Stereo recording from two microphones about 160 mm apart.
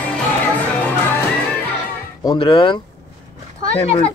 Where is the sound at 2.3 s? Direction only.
30° left (ahead or behind).